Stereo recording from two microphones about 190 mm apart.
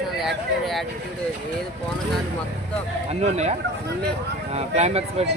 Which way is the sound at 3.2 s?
35° right (ahead or behind).